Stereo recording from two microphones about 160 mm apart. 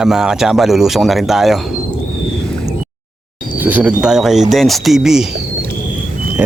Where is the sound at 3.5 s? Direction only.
10° right (ahead or behind).